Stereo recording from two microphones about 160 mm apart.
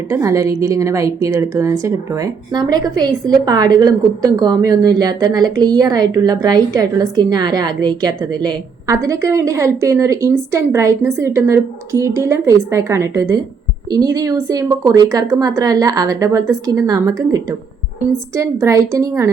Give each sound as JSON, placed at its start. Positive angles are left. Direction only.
{"t": 0.1, "sound": "a woman's voice", "side_deg": -20}